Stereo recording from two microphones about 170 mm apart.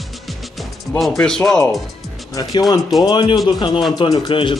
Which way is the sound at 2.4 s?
20° left (ahead or behind).